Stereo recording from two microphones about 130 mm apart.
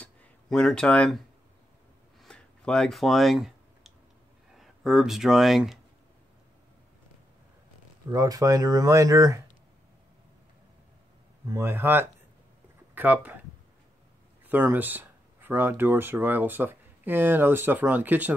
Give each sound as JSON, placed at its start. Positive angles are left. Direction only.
{"t": 0.0, "sound": "a sound", "side_deg": 10}
{"t": 2.2, "sound": "clicking", "side_deg": 5}
{"t": 4.6, "sound": "speech", "side_deg": 0}
{"t": 8.1, "sound": "speech", "side_deg": -25}
{"t": 11.4, "sound": "speech", "side_deg": -20}
{"t": 14.5, "sound": "speech", "side_deg": -15}